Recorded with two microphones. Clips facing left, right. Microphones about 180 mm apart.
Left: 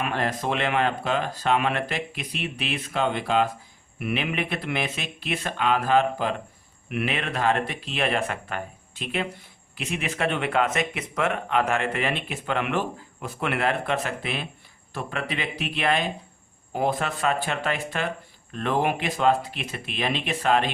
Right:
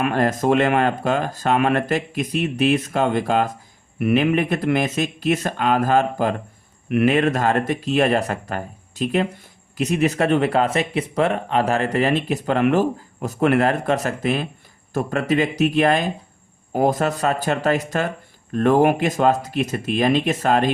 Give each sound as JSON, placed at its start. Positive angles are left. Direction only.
{"t": 0.0, "sound": "speech", "side_deg": -45}